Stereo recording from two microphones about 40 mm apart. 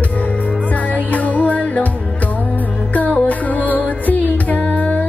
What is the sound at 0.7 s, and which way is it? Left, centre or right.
Music, left.